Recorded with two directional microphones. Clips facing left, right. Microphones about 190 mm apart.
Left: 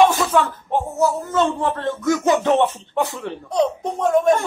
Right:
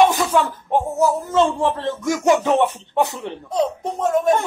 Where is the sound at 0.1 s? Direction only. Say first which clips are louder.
Even; 15° right (ahead or behind).